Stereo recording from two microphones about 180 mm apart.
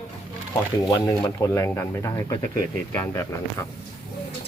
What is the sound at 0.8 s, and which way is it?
Speech, 20° left (ahead or behind).